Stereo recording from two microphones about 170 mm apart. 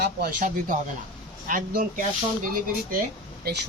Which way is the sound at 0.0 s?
65° right (ahead or behind).